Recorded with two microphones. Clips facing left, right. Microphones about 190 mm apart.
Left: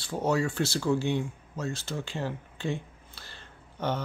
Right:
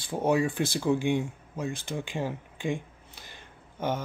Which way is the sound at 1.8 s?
15° right (ahead or behind).